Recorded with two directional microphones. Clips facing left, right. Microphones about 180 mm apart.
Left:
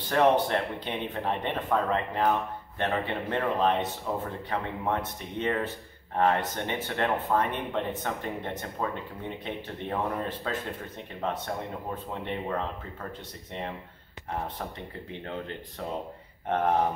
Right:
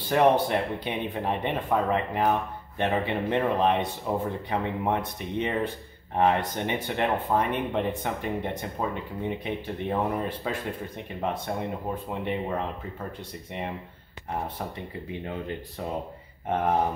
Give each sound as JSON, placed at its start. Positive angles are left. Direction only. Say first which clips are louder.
{"t": 0.1, "sound": "speech", "louder": "right 2 dB", "side_deg": -10}
{"t": 15.0, "sound": "speech", "louder": "right 3 dB", "side_deg": -10}